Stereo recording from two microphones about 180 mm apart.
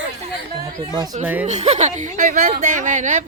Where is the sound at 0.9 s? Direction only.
20° right (ahead or behind).